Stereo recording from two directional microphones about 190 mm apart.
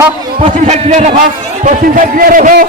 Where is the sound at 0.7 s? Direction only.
35° right (ahead or behind).